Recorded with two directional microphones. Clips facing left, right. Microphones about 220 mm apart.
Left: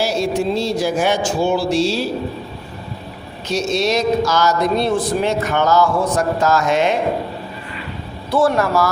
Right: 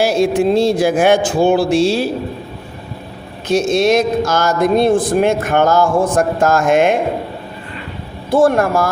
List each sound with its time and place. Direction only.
0.0 s speech: 55° right (ahead or behind)
3.5 s speech: 50° right (ahead or behind)
8.3 s speech: 50° right (ahead or behind)